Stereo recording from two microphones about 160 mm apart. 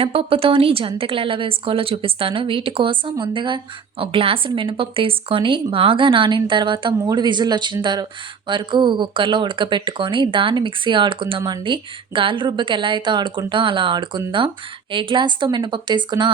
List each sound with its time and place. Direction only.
0.0 s a woman's voice: 35° right (ahead or behind)